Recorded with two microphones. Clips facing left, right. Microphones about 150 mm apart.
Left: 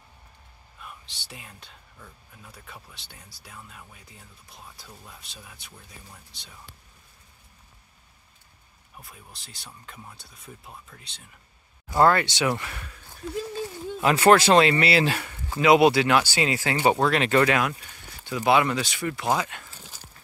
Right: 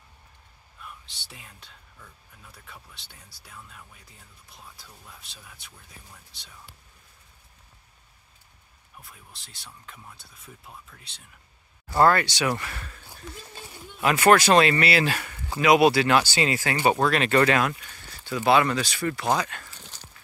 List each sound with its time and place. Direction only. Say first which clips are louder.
1.0 s speech: left 3 dB; centre (ahead or behind)
5.2 s speech: left 2 dB; centre (ahead or behind)
9.0 s speech: left 4 dB; centre (ahead or behind)
12.0 s speech: even; 20° left (ahead or behind)
13.9 s speech: left 1 dB; 25° left (ahead or behind)
19.6 s walk: even; 5° left (ahead or behind)